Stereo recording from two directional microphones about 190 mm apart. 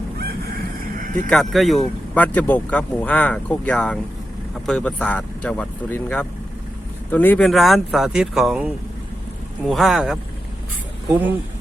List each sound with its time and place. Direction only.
1.3 s speech: centre (ahead or behind)